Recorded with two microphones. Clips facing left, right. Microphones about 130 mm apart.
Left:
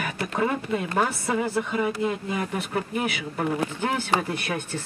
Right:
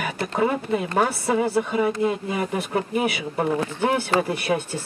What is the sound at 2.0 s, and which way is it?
Speech, 20° right (ahead or behind).